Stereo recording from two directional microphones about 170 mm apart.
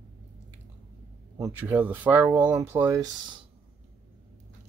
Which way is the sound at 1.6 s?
10° right (ahead or behind).